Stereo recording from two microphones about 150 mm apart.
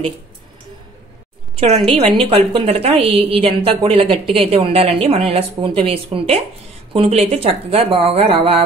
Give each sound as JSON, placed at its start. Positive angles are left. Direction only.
{"t": 1.6, "sound": "a woman's voice", "side_deg": -40}